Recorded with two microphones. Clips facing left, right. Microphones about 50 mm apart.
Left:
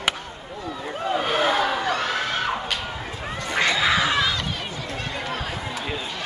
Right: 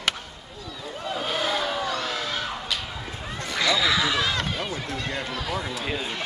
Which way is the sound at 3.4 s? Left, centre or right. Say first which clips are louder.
Left 2 dB; left.